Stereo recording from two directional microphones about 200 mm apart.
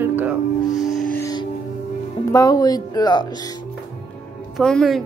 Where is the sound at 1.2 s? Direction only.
20° left (ahead or behind).